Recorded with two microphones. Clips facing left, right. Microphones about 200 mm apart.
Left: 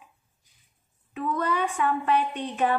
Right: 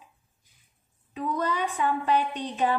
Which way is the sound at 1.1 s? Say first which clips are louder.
Left 1 dB; 15° right (ahead or behind).